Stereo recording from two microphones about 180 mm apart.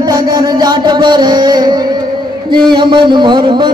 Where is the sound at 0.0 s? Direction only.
20° right (ahead or behind).